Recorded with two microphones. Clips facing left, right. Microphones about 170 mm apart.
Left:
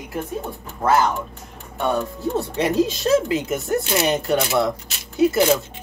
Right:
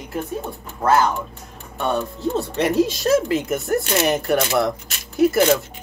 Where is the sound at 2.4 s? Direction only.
15° left (ahead or behind).